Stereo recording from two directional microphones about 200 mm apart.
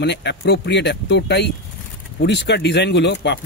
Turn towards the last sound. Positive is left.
turn(degrees=60)  # may be behind; listen again after turning